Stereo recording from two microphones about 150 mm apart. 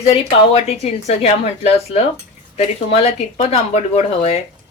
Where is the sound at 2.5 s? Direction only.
40° left (ahead or behind).